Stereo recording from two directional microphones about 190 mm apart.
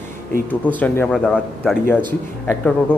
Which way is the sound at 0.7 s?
10° left (ahead or behind).